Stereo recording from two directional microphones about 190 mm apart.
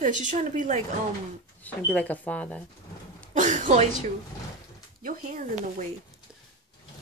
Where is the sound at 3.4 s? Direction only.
40° right (ahead or behind).